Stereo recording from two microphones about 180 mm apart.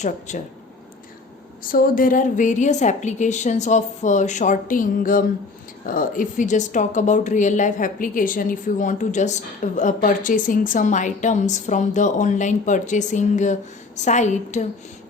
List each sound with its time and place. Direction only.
0.0 s a woman's voice: 40° left (ahead or behind)
1.7 s a woman's voice: 50° left (ahead or behind)